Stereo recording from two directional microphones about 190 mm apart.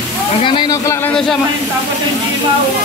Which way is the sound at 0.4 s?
25° left (ahead or behind).